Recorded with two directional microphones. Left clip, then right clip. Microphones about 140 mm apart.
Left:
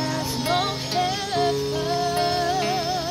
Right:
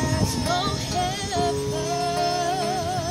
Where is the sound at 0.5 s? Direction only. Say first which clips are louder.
Left 3 dB; 15° right (ahead or behind).